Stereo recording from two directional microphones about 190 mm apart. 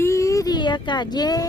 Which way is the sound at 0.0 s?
15° left (ahead or behind).